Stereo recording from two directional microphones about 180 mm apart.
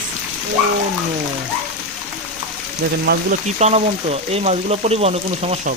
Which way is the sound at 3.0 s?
65° right (ahead or behind).